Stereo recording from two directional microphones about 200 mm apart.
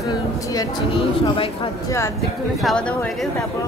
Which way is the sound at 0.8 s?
30° left (ahead or behind).